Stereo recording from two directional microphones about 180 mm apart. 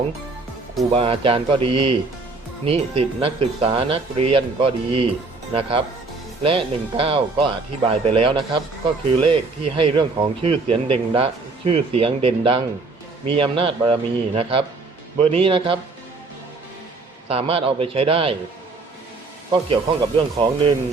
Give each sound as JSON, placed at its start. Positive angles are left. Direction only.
{"t": 0.9, "sound": "speech", "side_deg": -30}
{"t": 17.2, "sound": "speech", "side_deg": -30}
{"t": 19.5, "sound": "speech", "side_deg": -25}